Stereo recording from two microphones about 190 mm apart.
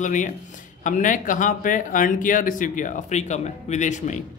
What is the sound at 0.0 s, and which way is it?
Speech, 40° left (ahead or behind).